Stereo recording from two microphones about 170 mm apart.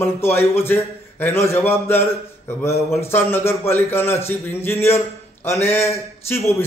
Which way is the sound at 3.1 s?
15° left (ahead or behind).